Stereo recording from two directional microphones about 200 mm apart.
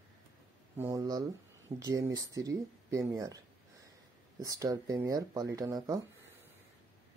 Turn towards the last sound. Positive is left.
turn(degrees=-20)  # may be behind; listen again after turning